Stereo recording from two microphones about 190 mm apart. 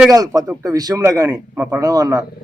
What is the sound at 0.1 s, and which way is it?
A man's voice, 20° right (ahead or behind).